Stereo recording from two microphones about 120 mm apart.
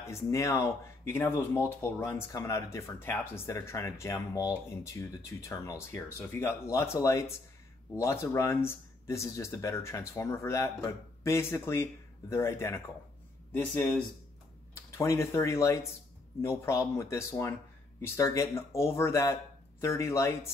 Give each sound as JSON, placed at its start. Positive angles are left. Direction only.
{"t": 0.0, "sound": "speech", "side_deg": 25}